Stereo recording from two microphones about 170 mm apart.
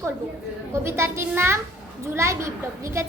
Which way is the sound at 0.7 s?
15° right (ahead or behind).